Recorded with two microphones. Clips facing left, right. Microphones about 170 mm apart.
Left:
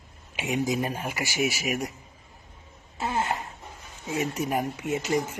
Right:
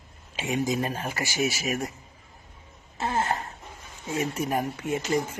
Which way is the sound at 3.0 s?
35° right (ahead or behind).